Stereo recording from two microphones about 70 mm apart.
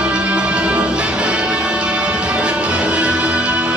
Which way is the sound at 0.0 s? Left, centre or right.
Centre.